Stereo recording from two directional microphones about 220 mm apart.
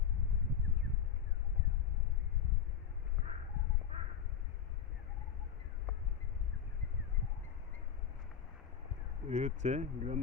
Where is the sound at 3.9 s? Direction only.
30° right (ahead or behind).